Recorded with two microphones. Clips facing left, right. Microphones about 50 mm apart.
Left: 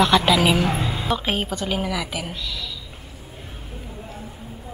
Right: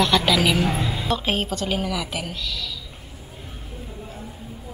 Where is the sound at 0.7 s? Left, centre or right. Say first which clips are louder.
Even; centre.